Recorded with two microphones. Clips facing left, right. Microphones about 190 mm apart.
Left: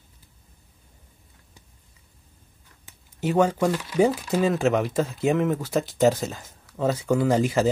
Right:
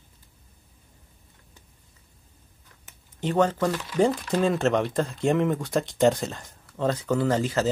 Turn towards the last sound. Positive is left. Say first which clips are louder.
# left 3 dB
turn(degrees=10)  # may be behind; listen again after turning